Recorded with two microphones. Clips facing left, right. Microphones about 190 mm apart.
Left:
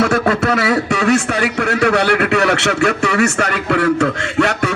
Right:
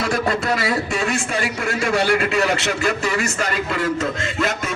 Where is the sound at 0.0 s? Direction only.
65° left (ahead or behind).